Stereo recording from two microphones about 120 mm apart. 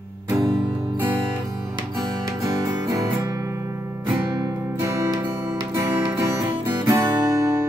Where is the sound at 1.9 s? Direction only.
30° right (ahead or behind).